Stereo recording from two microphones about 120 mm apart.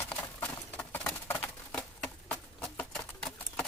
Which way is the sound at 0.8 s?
10° left (ahead or behind).